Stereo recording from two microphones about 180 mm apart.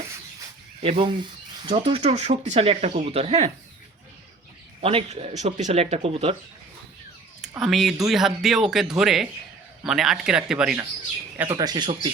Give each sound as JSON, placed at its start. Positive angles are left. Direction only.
{"t": 0.8, "sound": "speech", "side_deg": -30}
{"t": 4.8, "sound": "speech", "side_deg": -30}
{"t": 7.5, "sound": "speech", "side_deg": 0}
{"t": 11.3, "sound": "speech", "side_deg": -20}